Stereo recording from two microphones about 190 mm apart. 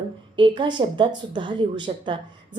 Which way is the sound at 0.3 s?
25° right (ahead or behind).